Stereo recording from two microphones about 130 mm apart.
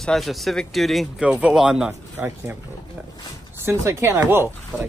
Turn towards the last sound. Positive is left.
turn(degrees=-20)  # may be behind; listen again after turning